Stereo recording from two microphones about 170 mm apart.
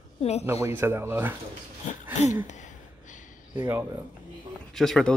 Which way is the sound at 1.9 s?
45° left (ahead or behind).